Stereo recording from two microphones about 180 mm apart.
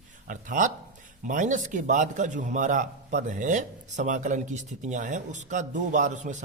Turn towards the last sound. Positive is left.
turn(degrees=-40)  # may be behind; listen again after turning